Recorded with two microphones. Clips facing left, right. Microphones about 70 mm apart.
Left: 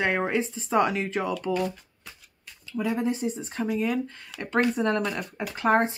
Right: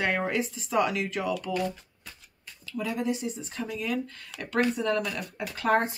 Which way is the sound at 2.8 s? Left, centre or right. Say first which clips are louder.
Left 3 dB; left.